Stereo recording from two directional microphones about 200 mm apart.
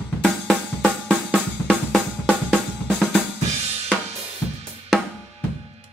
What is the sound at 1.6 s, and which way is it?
Drum, 5° right (ahead or behind).